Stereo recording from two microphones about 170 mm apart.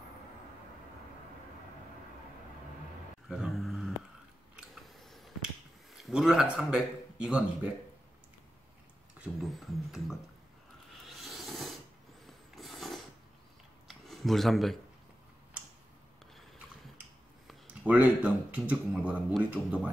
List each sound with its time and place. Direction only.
3.3 s a sound: centre (ahead or behind)
5.9 s a man's voice: 5° right (ahead or behind)
9.2 s music: centre (ahead or behind)
11.1 s filing: centre (ahead or behind)
12.5 s a sound: centre (ahead or behind)
17.5 s speech: 10° right (ahead or behind)